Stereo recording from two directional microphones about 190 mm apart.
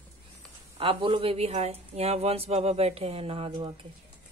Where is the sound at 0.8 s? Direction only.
30° right (ahead or behind).